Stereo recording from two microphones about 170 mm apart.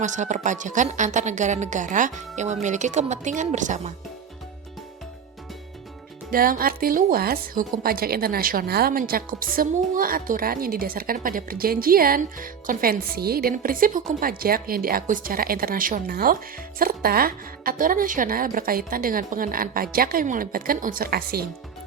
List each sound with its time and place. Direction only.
0.0 s speech: 45° right (ahead or behind)
6.3 s a woman's voice: 60° right (ahead or behind)